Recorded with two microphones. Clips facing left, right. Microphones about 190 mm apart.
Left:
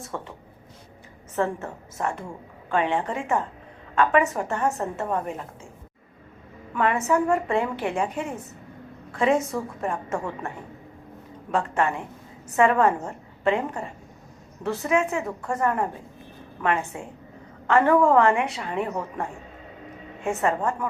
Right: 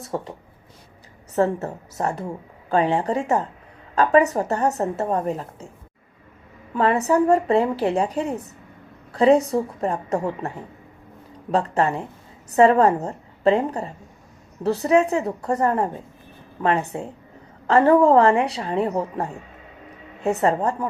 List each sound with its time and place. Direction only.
0.0 s a woman's voice: 35° right (ahead or behind)
1.4 s a woman's voice: 40° right (ahead or behind)
6.7 s a woman's voice: 35° right (ahead or behind)
11.5 s a woman's voice: 35° right (ahead or behind)